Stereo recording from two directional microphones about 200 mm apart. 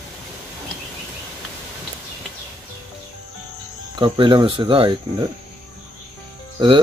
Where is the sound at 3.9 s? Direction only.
25° right (ahead or behind).